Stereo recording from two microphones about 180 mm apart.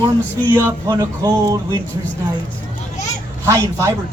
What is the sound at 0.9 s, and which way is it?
Speech, 20° right (ahead or behind).